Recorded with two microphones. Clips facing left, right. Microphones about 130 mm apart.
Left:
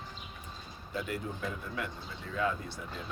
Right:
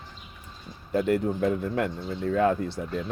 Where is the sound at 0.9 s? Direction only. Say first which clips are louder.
Right 13 dB; 70° right (ahead or behind).